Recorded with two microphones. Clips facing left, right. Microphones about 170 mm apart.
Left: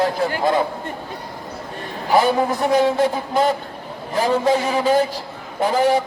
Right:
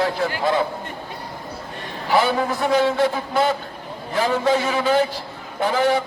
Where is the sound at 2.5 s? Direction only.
45° left (ahead or behind).